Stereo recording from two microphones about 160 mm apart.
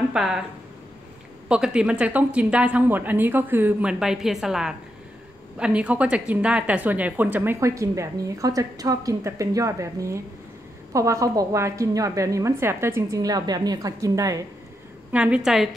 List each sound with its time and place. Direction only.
0.1 s speech: 5° right (ahead or behind)
1.5 s a woman's voice: 5° right (ahead or behind); by 14.4 s 20° right (ahead or behind)
15.1 s a woman's voice: 5° right (ahead or behind)